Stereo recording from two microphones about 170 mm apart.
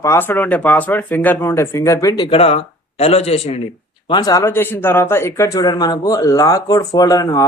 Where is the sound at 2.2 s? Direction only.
35° left (ahead or behind).